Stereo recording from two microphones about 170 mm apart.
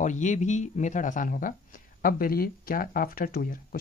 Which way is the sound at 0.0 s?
45° left (ahead or behind).